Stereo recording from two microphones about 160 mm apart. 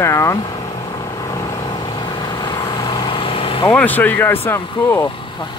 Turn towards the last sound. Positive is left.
turn(degrees=15)  # may be behind; listen again after turning